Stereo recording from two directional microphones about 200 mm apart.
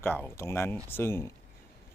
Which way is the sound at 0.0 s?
10° left (ahead or behind).